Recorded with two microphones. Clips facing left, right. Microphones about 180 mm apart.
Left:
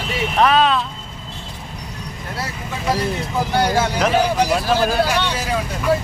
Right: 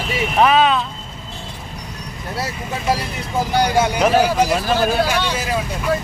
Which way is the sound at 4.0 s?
5° right (ahead or behind).